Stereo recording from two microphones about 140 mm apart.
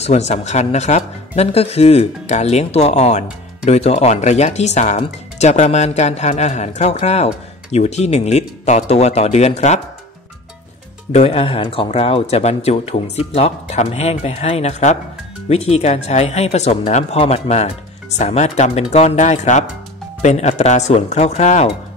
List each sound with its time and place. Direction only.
0.0 s speech: 50° left (ahead or behind)
11.1 s speech: 45° left (ahead or behind)